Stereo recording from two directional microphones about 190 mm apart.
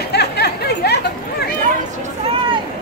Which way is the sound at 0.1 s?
60° left (ahead or behind).